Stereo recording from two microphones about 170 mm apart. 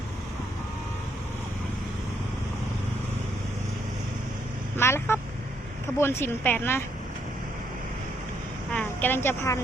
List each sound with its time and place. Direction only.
4.8 s vehicle: 15° left (ahead or behind)
6.0 s speech: 15° left (ahead or behind)
8.7 s a woman's voice: 10° left (ahead or behind)